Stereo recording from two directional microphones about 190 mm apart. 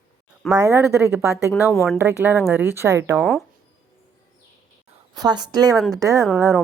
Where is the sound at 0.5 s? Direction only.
15° right (ahead or behind).